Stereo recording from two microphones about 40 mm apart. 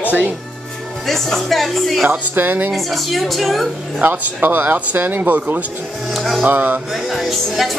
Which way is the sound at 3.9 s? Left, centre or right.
Right.